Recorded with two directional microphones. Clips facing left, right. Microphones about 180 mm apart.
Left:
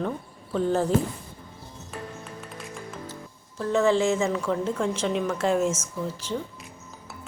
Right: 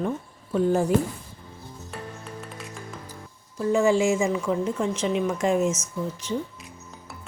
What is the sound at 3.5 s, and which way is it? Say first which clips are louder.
A woman's voice: right 1 dB; 10° right (ahead or behind).